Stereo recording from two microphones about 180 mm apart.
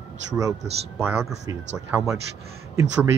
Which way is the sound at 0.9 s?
10° right (ahead or behind).